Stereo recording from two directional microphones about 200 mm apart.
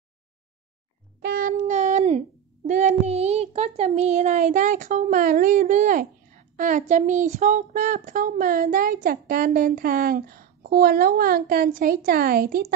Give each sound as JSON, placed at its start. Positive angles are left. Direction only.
{"t": 1.2, "sound": "child singing", "side_deg": -50}
{"t": 1.6, "sound": "a child's voice", "side_deg": -35}